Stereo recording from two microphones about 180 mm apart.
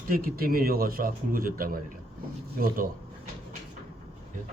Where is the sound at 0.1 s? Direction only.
55° right (ahead or behind).